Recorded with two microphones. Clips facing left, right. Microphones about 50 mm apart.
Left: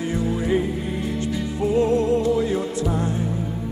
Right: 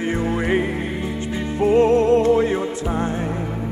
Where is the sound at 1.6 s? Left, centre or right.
Right.